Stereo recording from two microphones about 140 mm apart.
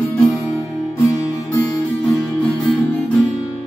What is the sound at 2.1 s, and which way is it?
Music, 5° left (ahead or behind).